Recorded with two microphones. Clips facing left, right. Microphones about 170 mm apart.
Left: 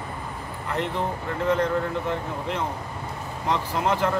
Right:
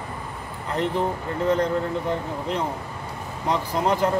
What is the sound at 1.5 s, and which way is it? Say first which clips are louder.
Speech: right 1 dB; 35° right (ahead or behind).